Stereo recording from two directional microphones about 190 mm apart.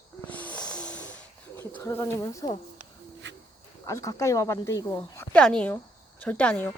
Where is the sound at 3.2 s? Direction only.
70° right (ahead or behind).